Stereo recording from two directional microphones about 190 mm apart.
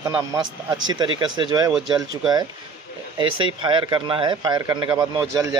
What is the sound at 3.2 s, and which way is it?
Speech, 25° right (ahead or behind).